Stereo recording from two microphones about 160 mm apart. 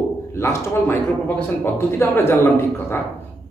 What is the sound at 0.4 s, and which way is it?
A man's voice, 15° left (ahead or behind).